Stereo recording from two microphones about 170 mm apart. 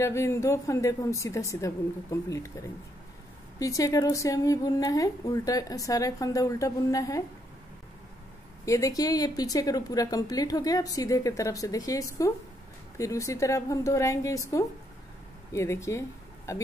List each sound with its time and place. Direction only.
0.0 s a woman's voice: 15° left (ahead or behind)
8.6 s a woman's voice: 20° left (ahead or behind)